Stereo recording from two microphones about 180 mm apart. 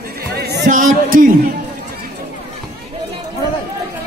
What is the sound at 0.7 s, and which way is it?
Speech, 45° right (ahead or behind).